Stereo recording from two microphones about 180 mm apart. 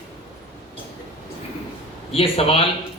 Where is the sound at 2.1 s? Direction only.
30° left (ahead or behind).